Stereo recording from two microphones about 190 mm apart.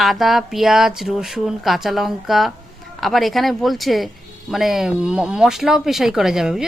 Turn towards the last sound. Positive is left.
turn(degrees=0)  # may be behind; listen again after turning